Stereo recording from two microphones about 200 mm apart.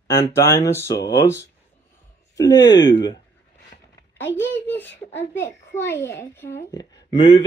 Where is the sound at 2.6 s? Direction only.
20° left (ahead or behind).